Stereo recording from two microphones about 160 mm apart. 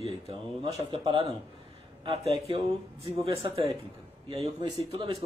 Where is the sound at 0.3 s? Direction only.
30° right (ahead or behind).